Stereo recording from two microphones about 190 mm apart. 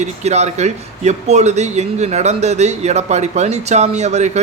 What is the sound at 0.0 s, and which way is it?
A man's voice, 35° right (ahead or behind).